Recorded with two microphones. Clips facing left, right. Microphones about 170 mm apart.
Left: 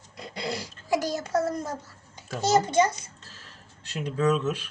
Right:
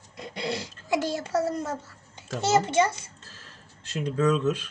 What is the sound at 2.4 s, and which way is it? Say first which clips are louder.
Speech: even; 25° right (ahead or behind).